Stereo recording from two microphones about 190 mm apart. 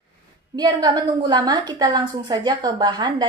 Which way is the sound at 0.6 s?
20° right (ahead or behind).